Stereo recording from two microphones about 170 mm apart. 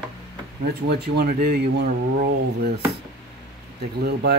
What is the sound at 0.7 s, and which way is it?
Speech, 70° right (ahead or behind).